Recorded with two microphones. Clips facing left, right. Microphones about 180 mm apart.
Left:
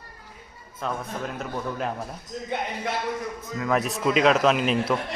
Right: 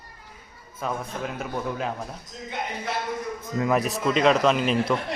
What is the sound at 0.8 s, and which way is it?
Speech, 5° right (ahead or behind).